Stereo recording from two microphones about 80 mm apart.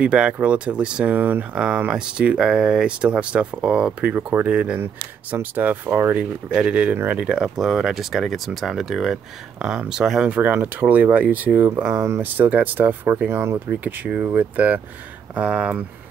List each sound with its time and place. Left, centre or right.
0.0 s speech: centre
4.7 s speech: right
6.1 s speech: centre
10.5 s speech: right
11.6 s speech: right
12.2 s speech: right